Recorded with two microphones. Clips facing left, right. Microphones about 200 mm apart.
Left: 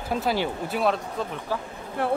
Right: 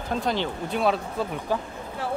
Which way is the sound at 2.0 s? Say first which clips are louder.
Left 5 dB; 60° left (ahead or behind).